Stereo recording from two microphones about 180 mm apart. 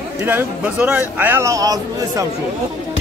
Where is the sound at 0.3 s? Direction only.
10° right (ahead or behind).